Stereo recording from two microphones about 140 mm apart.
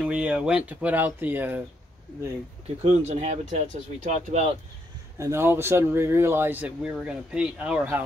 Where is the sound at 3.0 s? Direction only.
55° right (ahead or behind).